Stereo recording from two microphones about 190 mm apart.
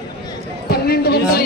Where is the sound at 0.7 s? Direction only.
55° left (ahead or behind).